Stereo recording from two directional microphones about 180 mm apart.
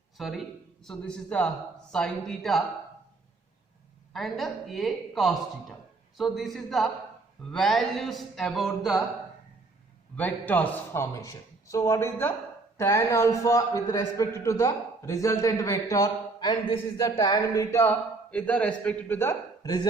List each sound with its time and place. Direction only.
0.2 s speech: centre (ahead or behind)
4.1 s speech: centre (ahead or behind)
10.2 s a man's voice: 10° left (ahead or behind)